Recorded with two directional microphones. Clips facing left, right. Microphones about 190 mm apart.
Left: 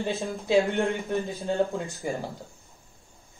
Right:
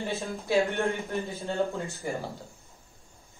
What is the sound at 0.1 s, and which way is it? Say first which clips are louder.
Speech: left 4 dB; 20° left (ahead or behind).